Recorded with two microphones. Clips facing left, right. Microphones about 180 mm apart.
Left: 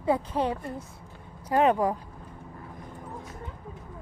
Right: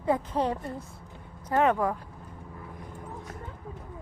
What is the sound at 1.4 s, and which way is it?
Speech, 15° left (ahead or behind).